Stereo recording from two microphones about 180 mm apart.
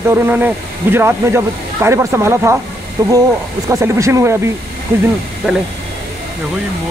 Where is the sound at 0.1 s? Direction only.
10° right (ahead or behind).